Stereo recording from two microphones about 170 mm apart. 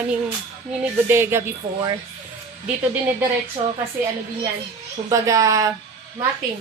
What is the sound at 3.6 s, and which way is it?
Speech, 40° right (ahead or behind).